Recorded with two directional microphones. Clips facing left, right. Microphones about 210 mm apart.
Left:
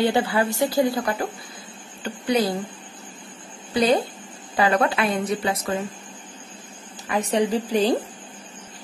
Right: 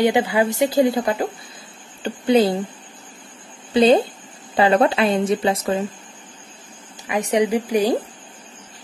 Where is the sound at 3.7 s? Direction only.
25° right (ahead or behind).